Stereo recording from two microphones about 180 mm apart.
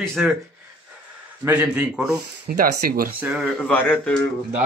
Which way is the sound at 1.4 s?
10° right (ahead or behind).